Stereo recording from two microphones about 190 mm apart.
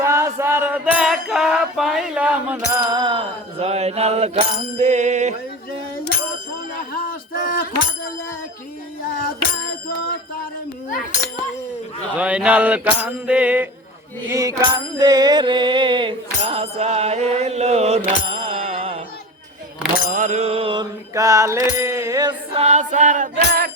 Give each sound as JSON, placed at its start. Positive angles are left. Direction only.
{"t": 0.0, "sound": "music", "side_deg": -15}
{"t": 2.9, "sound": "bicycle bell", "side_deg": -25}
{"t": 6.9, "sound": "bicycle bell", "side_deg": 50}
{"t": 12.1, "sound": "mantra", "side_deg": -5}
{"t": 20.1, "sound": "mantra", "side_deg": -40}
{"t": 21.2, "sound": "mantra", "side_deg": -15}
{"t": 22.6, "sound": "chant", "side_deg": -40}